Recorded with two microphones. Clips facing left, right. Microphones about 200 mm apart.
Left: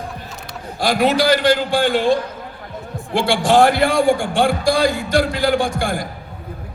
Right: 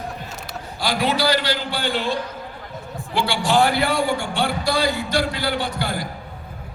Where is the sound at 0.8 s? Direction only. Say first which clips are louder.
Left 5 dB; 50° left (ahead or behind).